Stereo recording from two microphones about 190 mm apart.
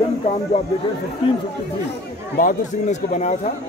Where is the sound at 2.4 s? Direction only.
45° left (ahead or behind).